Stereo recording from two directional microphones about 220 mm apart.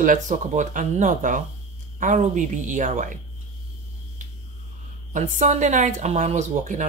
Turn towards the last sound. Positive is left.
turn(degrees=-35)  # may be behind; listen again after turning